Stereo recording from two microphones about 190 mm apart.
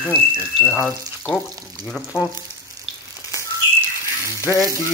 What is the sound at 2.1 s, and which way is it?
Speech, 5° right (ahead or behind).